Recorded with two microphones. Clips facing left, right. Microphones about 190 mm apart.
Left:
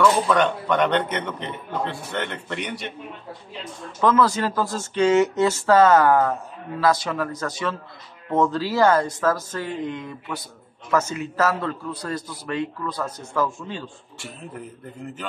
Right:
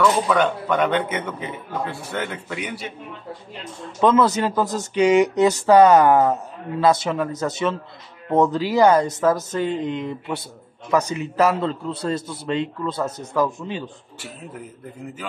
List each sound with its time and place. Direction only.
0.0 s a man's voice: 5° right (ahead or behind)
4.0 s a man's voice: 20° right (ahead or behind)